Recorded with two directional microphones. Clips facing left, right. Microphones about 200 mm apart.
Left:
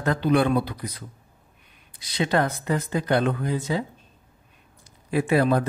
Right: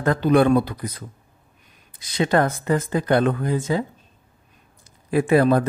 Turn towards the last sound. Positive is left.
turn(degrees=-50)  # may be behind; listen again after turning